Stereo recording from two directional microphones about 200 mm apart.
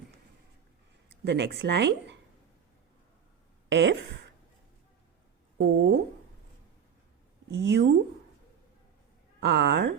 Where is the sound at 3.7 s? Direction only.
65° right (ahead or behind).